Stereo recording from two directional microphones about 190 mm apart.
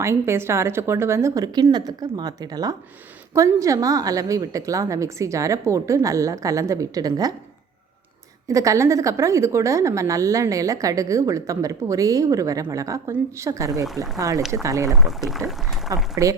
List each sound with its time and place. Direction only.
0.0 s a woman's voice: 15° right (ahead or behind)
8.4 s a woman's voice: 15° right (ahead or behind)
14.9 s speech: centre (ahead or behind)
16.2 s a woman's voice: 15° right (ahead or behind)